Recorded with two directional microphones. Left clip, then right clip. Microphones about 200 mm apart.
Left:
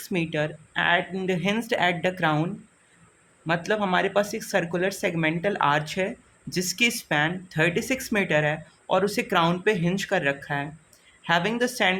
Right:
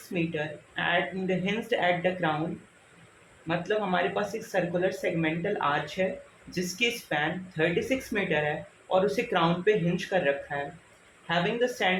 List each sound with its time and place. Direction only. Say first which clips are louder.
0.1 s speech: left 4 dB; 50° left (ahead or behind)
3.4 s speech: left 4 dB; 55° left (ahead or behind)